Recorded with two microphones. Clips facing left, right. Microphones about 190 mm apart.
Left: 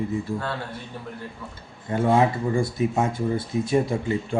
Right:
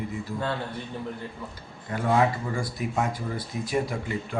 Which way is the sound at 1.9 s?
25° left (ahead or behind).